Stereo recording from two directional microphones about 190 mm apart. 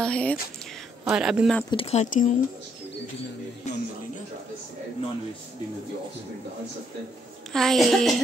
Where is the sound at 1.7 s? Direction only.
30° left (ahead or behind).